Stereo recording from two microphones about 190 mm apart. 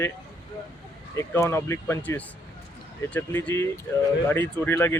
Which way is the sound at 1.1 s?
15° left (ahead or behind).